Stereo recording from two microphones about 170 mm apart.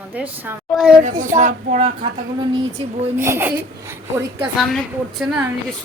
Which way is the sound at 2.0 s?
30° right (ahead or behind).